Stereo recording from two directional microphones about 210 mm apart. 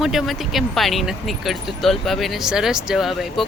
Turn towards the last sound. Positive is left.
turn(degrees=0)  # may be behind; listen again after turning